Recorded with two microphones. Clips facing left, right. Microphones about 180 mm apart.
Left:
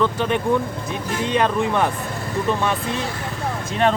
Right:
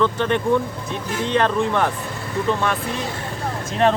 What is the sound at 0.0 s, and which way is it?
Speech, 10° left (ahead or behind).